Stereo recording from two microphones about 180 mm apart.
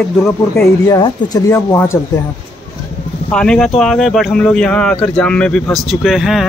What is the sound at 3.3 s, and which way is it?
Speech, 5° left (ahead or behind).